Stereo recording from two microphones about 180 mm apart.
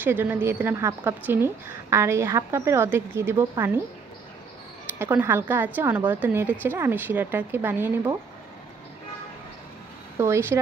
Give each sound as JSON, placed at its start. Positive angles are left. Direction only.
{"t": 0.0, "sound": "a woman's voice", "side_deg": -10}
{"t": 4.9, "sound": "a woman's voice", "side_deg": -15}
{"t": 10.2, "sound": "a woman's voice", "side_deg": -15}